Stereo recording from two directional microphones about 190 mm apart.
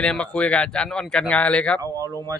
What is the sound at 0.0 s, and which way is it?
Speech, 5° left (ahead or behind).